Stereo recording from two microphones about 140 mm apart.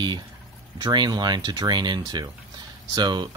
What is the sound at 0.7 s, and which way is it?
Speech, 30° right (ahead or behind).